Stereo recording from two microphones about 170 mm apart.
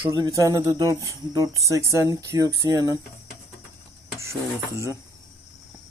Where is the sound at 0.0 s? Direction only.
25° right (ahead or behind).